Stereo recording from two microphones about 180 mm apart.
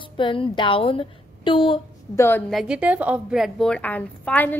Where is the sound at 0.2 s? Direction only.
25° left (ahead or behind).